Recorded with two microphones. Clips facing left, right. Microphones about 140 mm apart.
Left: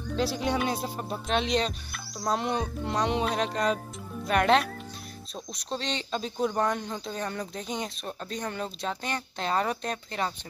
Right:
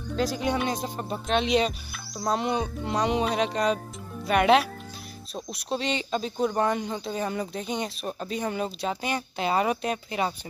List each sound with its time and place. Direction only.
0.4 s speech: centre (ahead or behind)